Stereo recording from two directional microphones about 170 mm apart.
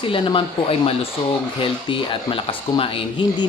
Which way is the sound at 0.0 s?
30° left (ahead or behind).